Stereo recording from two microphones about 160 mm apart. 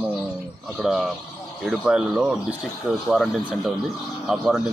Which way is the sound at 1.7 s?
5° right (ahead or behind).